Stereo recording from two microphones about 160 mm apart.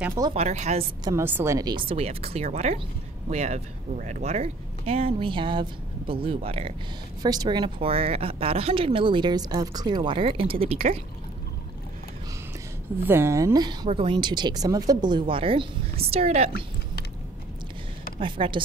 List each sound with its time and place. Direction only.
0.3 s speech: 45° right (ahead or behind)
1.0 s speech: 15° right (ahead or behind); by 6.7 s 35° right (ahead or behind)
7.2 s speech: 25° right (ahead or behind)
13.0 s a woman's voice: 15° right (ahead or behind)
13.8 s speech: 35° right (ahead or behind)
18.2 s speech: 30° right (ahead or behind)